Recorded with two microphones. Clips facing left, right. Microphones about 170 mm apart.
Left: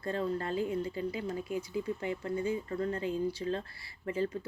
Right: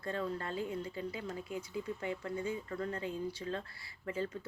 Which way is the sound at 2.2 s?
30° left (ahead or behind).